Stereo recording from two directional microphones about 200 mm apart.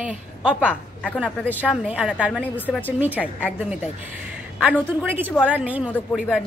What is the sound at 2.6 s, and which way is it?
Speech, 10° left (ahead or behind).